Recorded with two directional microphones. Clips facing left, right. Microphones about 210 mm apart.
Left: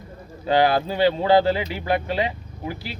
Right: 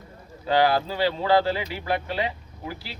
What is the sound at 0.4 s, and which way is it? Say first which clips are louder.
Speech: left 2 dB; 20° left (ahead or behind).